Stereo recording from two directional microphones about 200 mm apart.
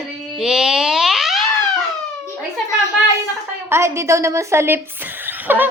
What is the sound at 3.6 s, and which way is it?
Speech, 15° right (ahead or behind).